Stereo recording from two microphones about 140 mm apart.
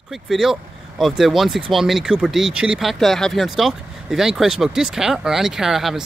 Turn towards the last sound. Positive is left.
turn(degrees=-5)  # may be behind; listen again after turning